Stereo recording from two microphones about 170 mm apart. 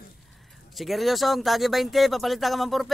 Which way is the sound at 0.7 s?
Centre (ahead or behind).